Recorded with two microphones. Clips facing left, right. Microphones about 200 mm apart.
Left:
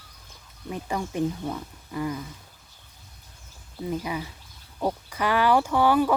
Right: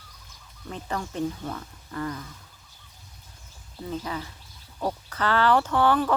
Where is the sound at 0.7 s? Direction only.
10° left (ahead or behind).